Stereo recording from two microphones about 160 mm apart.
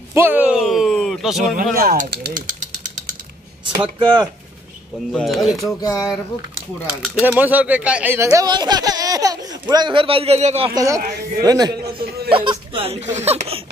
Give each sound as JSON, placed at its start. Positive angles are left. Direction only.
{"t": 0.1, "sound": "speech", "side_deg": -15}
{"t": 1.6, "sound": "speech", "side_deg": -60}
{"t": 3.6, "sound": "speech", "side_deg": -30}
{"t": 5.1, "sound": "speech", "side_deg": 0}
{"t": 5.8, "sound": "speech", "side_deg": 20}
{"t": 6.9, "sound": "speech", "side_deg": -5}
{"t": 10.7, "sound": "speech", "side_deg": -20}